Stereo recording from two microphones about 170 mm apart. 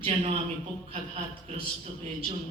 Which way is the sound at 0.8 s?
35° right (ahead or behind).